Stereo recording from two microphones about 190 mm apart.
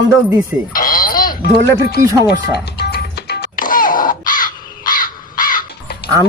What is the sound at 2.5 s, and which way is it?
Music, 60° left (ahead or behind).